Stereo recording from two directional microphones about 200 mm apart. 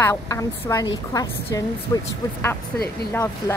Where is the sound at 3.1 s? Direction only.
15° left (ahead or behind).